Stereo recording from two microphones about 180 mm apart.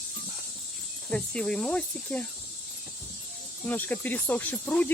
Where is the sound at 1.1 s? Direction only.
5° left (ahead or behind).